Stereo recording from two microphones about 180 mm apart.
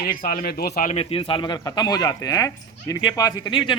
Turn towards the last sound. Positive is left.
turn(degrees=20)  # may be behind; listen again after turning